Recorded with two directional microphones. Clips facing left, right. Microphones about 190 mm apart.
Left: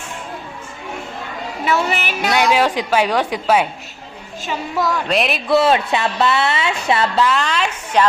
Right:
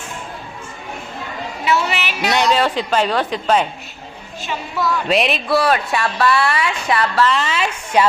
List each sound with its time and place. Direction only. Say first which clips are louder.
1.7 s a sound: even; 50° left (ahead or behind)
2.3 s a woman's voice: left 1 dB; 10° left (ahead or behind)
5.0 s speech: right 1 dB; centre (ahead or behind)
5.5 s a woman's voice: left 6 dB; 25° left (ahead or behind)
7.3 s a woman's voice: even; 5° right (ahead or behind)